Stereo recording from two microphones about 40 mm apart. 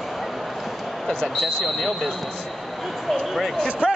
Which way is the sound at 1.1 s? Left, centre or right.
Centre.